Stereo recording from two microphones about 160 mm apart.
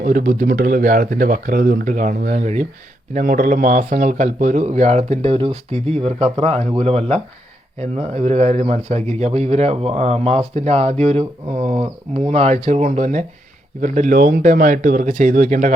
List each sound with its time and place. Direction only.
0.0 s speech: 60° right (ahead or behind)
3.2 s a man's voice: 60° right (ahead or behind)